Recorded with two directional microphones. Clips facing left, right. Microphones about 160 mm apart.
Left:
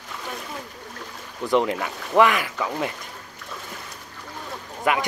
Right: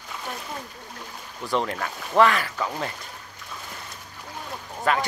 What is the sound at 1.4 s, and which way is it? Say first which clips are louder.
Speech: left 5 dB; 20° left (ahead or behind).